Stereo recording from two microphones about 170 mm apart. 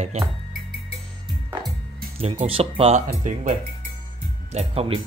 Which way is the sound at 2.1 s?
35° right (ahead or behind).